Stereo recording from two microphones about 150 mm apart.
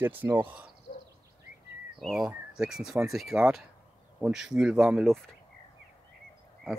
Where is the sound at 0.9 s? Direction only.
50° left (ahead or behind).